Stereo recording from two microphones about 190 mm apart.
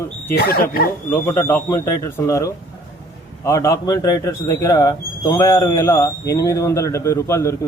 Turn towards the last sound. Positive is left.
turn(degrees=15)  # may be behind; listen again after turning